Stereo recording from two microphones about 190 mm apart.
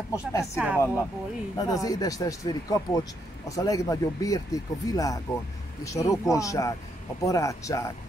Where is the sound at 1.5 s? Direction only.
20° left (ahead or behind).